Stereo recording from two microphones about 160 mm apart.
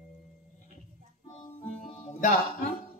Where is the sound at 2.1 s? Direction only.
50° left (ahead or behind).